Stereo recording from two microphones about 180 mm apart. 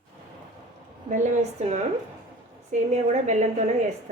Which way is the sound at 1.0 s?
45° right (ahead or behind).